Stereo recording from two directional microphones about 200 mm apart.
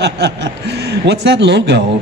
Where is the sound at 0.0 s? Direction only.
60° right (ahead or behind).